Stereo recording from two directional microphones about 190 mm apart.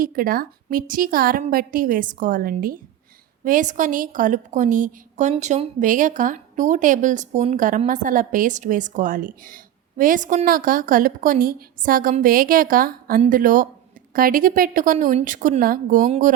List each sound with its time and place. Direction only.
0.0 s a woman's voice: 50° right (ahead or behind)